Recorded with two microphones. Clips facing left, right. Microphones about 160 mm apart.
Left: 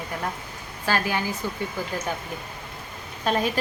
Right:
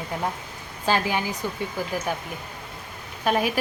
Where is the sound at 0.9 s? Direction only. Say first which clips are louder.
Right 1 dB; 20° right (ahead or behind).